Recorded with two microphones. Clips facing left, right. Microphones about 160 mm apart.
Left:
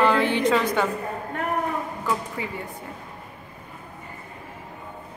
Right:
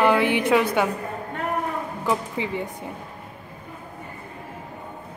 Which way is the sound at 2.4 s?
20° right (ahead or behind).